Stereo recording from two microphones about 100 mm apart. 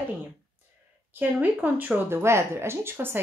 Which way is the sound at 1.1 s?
20° right (ahead or behind).